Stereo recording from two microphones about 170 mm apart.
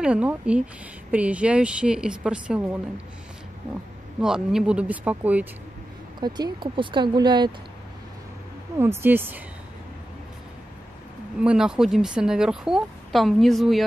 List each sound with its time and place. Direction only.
0.0 s a woman's voice: 5° right (ahead or behind)
4.2 s a woman's voice: 5° right (ahead or behind)
6.1 s speech: 25° right (ahead or behind)
8.7 s a woman's voice: 15° right (ahead or behind)
11.4 s speech: 5° right (ahead or behind)